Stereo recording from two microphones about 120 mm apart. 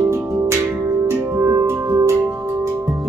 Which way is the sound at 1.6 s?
30° right (ahead or behind).